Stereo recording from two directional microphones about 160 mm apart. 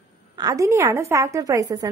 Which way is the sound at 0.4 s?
20° right (ahead or behind).